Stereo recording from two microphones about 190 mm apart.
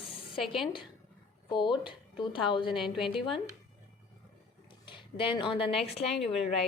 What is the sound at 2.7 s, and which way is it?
Speech, centre (ahead or behind).